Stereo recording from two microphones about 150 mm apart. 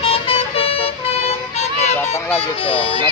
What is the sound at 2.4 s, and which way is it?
Speech, 35° left (ahead or behind).